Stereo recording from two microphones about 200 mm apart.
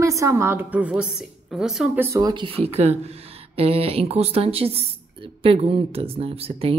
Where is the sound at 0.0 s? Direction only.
15° right (ahead or behind).